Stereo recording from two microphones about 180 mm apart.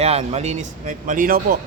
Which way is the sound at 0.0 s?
35° right (ahead or behind).